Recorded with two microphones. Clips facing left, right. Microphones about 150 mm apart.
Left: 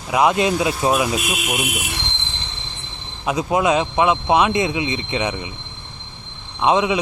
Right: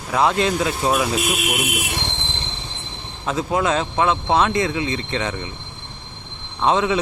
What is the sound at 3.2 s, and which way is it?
Speech, 15° left (ahead or behind).